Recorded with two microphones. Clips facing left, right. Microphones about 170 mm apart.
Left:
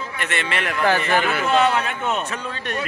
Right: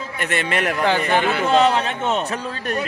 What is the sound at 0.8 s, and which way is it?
Speech, 20° right (ahead or behind).